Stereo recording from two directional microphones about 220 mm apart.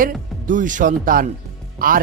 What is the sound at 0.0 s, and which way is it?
Speech, 35° right (ahead or behind).